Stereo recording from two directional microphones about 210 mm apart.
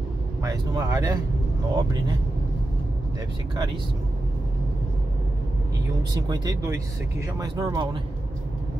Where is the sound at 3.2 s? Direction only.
20° right (ahead or behind).